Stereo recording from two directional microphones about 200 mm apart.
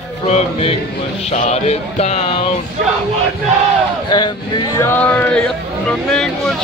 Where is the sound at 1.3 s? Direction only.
35° left (ahead or behind).